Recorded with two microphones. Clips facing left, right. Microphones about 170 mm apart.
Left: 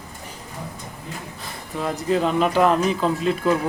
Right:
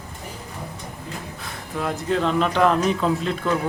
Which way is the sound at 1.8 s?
Centre (ahead or behind).